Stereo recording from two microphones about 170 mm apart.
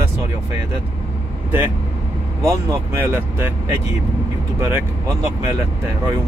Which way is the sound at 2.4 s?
15° right (ahead or behind).